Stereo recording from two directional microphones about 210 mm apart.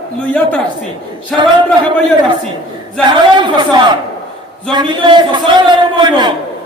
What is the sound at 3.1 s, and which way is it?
A man's voice, 20° right (ahead or behind).